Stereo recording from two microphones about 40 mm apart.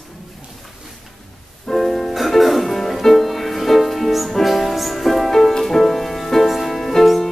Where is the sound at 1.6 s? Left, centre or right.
Centre.